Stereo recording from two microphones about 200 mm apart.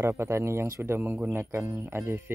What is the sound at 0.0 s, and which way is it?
Speech, 10° right (ahead or behind).